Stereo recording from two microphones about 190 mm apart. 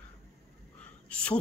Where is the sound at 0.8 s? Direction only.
5° left (ahead or behind).